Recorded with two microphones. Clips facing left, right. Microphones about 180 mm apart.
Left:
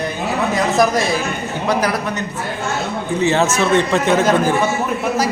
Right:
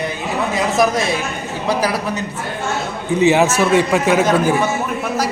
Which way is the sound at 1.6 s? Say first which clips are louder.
Even; 10° right (ahead or behind).